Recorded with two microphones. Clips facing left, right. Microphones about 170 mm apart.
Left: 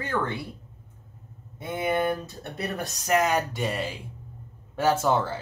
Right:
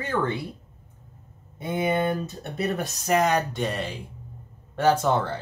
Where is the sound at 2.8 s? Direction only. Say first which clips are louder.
Even; centre (ahead or behind).